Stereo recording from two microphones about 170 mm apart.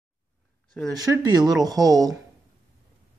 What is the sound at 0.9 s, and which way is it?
Speech, 25° right (ahead or behind).